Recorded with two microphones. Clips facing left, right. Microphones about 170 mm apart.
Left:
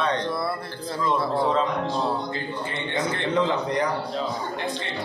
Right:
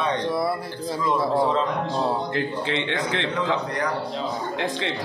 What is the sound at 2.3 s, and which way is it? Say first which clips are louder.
Speech: right 5 dB; 90° right.